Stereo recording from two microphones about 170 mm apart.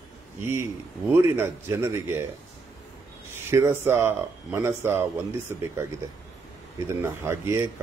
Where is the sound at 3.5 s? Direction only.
15° right (ahead or behind).